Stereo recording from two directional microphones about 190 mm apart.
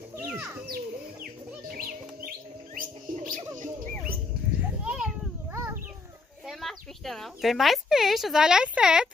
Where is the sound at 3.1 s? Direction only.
45° right (ahead or behind).